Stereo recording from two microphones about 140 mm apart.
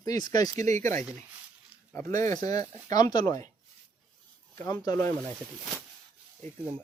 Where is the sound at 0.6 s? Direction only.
55° right (ahead or behind).